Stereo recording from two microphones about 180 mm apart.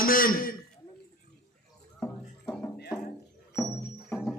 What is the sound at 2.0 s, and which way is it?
Music, 10° left (ahead or behind).